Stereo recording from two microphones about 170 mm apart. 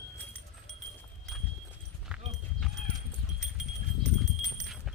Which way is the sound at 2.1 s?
5° right (ahead or behind).